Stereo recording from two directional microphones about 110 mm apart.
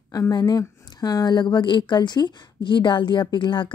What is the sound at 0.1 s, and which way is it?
Speech, 35° left (ahead or behind).